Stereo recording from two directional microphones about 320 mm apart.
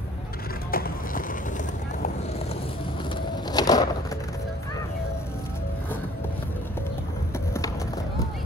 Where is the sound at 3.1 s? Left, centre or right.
Centre.